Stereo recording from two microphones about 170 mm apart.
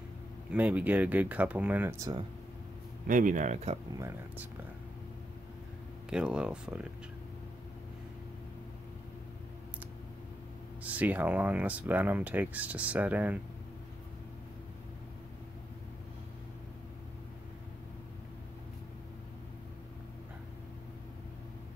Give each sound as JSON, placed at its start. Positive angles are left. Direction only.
{"t": 0.5, "sound": "speech", "side_deg": -10}
{"t": 3.1, "sound": "speech", "side_deg": -50}
{"t": 4.0, "sound": "speech", "side_deg": -15}
{"t": 6.0, "sound": "speech", "side_deg": -5}
{"t": 10.8, "sound": "speech", "side_deg": -10}